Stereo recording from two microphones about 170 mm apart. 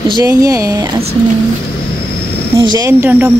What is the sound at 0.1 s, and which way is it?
Speech, 20° right (ahead or behind).